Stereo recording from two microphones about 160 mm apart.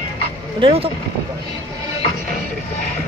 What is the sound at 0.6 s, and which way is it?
Speech, 35° right (ahead or behind).